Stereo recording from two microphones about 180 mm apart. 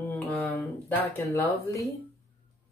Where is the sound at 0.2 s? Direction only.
10° left (ahead or behind).